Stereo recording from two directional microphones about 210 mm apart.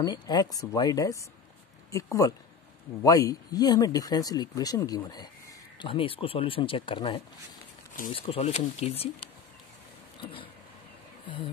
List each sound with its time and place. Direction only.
0.0 s speech: 20° left (ahead or behind)
10.2 s speech: 25° left (ahead or behind)